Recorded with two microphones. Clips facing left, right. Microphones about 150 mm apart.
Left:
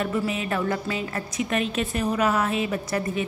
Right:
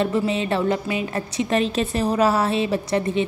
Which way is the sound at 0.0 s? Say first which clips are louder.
Right 5 dB; 25° right (ahead or behind).